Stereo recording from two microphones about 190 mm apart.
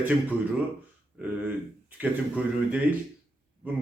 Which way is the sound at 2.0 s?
5° right (ahead or behind).